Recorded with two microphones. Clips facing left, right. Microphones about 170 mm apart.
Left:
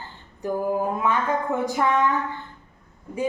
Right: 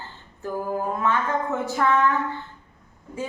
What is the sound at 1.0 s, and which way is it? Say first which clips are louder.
A woman's voice: left 1 dB; 15° left (ahead or behind).